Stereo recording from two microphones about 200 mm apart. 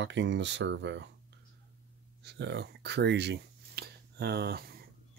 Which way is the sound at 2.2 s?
60° right (ahead or behind).